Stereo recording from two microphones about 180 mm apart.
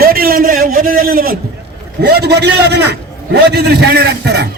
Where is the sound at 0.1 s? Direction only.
55° right (ahead or behind).